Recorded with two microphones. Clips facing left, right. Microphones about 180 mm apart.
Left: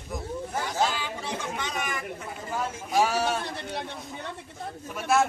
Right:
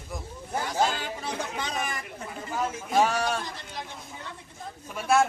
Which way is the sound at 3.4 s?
65° left (ahead or behind).